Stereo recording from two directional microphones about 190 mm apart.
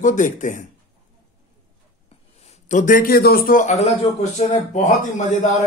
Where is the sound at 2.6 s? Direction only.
40° left (ahead or behind).